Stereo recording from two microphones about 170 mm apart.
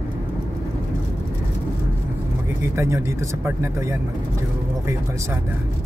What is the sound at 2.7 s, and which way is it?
Speech, 15° right (ahead or behind).